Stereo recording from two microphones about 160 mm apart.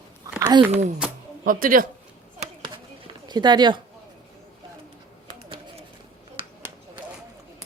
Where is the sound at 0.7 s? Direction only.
45° right (ahead or behind).